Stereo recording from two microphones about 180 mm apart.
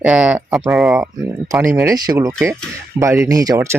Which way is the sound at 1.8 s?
20° right (ahead or behind).